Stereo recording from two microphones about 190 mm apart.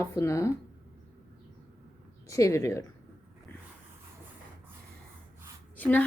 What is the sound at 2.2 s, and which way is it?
Speech, 15° left (ahead or behind).